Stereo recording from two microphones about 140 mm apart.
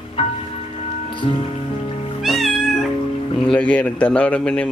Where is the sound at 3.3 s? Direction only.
5° left (ahead or behind).